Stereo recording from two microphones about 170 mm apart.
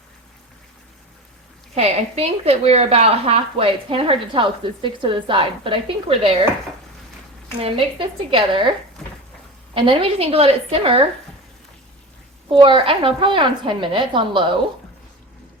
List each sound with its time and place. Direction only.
1.7 s speech: 40° right (ahead or behind)
7.6 s speech: 30° right (ahead or behind)
9.7 s speech: 30° right (ahead or behind)
12.5 s a woman's voice: 30° right (ahead or behind)